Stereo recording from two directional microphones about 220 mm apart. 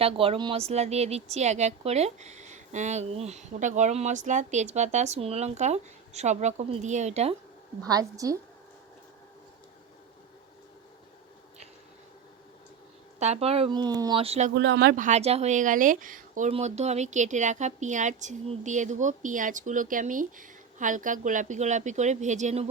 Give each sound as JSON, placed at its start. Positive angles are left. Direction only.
{"t": 0.0, "sound": "speech", "side_deg": -25}
{"t": 7.9, "sound": "a woman's voice", "side_deg": -15}
{"t": 13.1, "sound": "speech", "side_deg": -30}
{"t": 14.5, "sound": "speech", "side_deg": -50}